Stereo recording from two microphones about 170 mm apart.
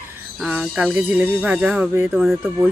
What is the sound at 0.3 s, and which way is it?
Speech, 5° right (ahead or behind).